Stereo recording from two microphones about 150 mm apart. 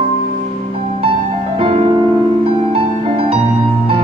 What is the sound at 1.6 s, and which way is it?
Music, 40° right (ahead or behind).